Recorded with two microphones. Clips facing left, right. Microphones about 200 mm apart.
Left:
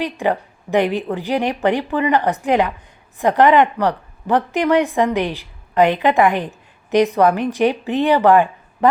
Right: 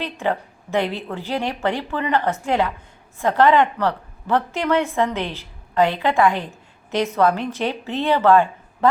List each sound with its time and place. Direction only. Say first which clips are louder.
0.0 s speech: left 4 dB; 15° left (ahead or behind)